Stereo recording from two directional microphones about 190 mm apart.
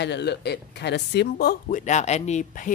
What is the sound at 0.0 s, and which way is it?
Speech, 65° left (ahead or behind).